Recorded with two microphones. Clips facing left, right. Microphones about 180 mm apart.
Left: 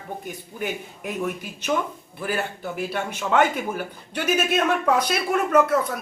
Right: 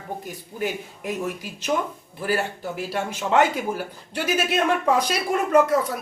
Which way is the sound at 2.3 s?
10° right (ahead or behind).